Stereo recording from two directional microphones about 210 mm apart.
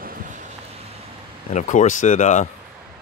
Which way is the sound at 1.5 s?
35° left (ahead or behind).